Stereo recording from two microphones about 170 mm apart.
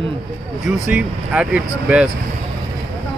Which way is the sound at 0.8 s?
5° right (ahead or behind).